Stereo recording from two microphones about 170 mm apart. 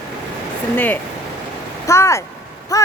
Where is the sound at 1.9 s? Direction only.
15° left (ahead or behind).